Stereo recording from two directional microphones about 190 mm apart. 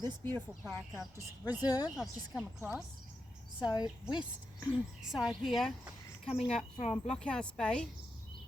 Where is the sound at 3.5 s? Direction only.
25° left (ahead or behind).